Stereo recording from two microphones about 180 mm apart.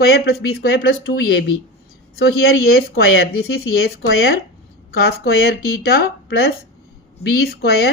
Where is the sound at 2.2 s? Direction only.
60° left (ahead or behind).